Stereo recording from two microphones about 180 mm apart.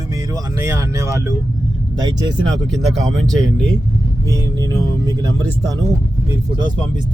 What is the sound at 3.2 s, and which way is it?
Speech, 5° left (ahead or behind).